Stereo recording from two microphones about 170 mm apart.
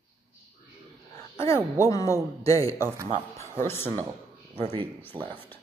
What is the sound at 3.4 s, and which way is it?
Speech, 15° left (ahead or behind).